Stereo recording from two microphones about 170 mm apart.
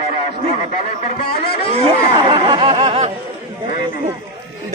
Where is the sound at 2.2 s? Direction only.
30° right (ahead or behind).